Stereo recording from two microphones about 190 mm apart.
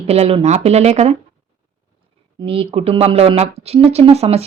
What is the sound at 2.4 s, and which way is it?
Speech, 30° right (ahead or behind).